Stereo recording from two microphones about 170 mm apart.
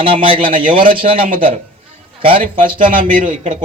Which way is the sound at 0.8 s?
55° right (ahead or behind).